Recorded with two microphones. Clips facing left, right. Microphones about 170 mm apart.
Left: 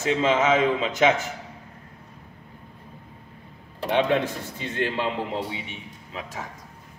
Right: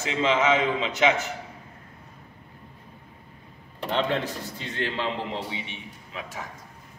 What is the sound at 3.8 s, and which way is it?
Speech, 15° left (ahead or behind).